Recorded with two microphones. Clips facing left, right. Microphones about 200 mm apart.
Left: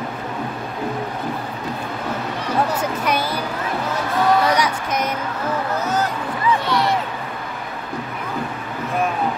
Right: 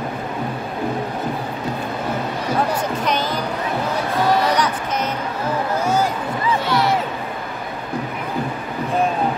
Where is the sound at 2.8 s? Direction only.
10° left (ahead or behind).